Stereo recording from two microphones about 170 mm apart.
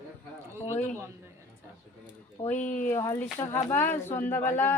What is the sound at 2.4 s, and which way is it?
Speech, 45° left (ahead or behind).